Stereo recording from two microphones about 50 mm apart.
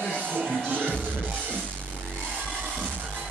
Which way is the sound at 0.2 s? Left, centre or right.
Right.